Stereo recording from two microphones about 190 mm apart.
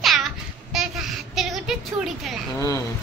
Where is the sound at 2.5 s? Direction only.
15° left (ahead or behind).